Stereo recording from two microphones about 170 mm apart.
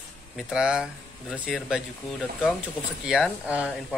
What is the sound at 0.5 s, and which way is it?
Speech, 5° right (ahead or behind).